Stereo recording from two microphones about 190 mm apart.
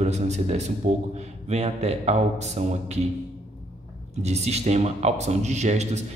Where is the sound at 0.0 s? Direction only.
35° right (ahead or behind).